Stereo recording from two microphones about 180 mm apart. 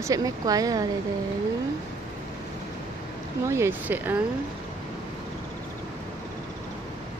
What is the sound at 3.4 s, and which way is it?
Speech, 15° right (ahead or behind).